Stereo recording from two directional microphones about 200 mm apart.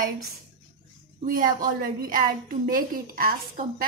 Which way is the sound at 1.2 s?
45° right (ahead or behind).